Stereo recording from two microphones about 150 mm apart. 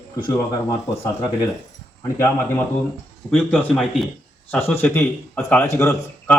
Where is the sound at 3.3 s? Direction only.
10° left (ahead or behind).